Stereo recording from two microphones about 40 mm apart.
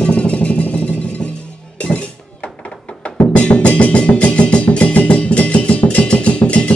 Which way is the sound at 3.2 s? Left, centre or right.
Left.